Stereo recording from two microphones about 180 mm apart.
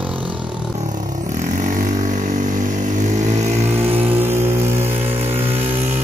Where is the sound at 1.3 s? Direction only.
45° right (ahead or behind).